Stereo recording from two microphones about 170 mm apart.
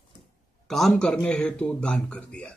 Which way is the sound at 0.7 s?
Centre (ahead or behind).